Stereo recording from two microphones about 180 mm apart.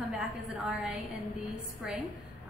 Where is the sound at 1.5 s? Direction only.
5° right (ahead or behind).